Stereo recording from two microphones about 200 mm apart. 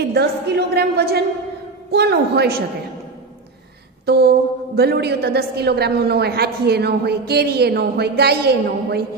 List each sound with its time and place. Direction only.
0.1 s a woman's voice: 55° right (ahead or behind)
4.0 s a woman's voice: 50° right (ahead or behind)